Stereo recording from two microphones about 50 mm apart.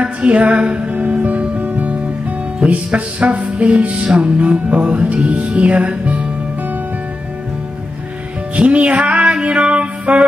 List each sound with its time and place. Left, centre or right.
0.0 s music: right
8.5 s music: right